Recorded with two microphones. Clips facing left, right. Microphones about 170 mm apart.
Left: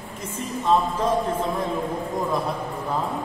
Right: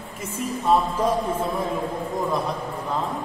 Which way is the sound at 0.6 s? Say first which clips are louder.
Even; 10° right (ahead or behind).